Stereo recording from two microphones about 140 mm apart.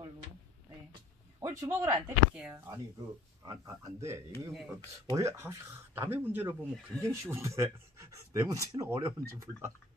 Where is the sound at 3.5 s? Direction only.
20° right (ahead or behind).